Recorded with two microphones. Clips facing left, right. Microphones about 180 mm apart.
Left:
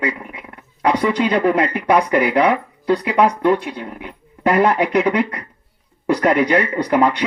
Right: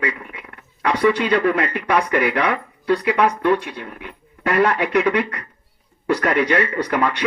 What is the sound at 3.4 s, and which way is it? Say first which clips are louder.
Speech: left 2 dB; 30° left (ahead or behind).